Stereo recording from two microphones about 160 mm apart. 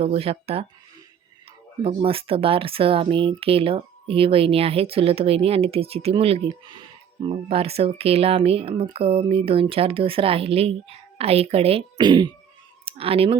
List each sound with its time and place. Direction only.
0.0 s speech: 40° right (ahead or behind)
1.8 s speech: 35° right (ahead or behind)